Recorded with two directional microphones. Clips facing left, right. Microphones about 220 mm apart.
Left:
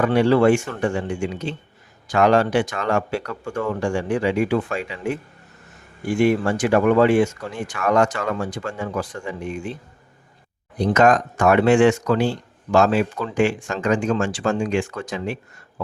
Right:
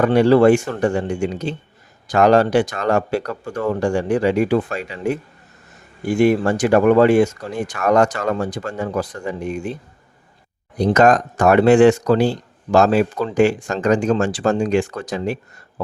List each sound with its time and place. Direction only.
0.0 s speech: 40° right (ahead or behind)
10.9 s speech: 35° right (ahead or behind)